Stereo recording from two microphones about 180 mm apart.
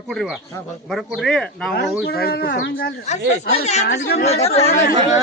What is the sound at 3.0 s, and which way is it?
Speech, 40° left (ahead or behind).